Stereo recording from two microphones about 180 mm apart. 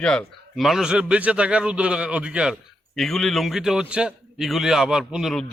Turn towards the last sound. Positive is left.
turn(degrees=0)  # may be behind; listen again after turning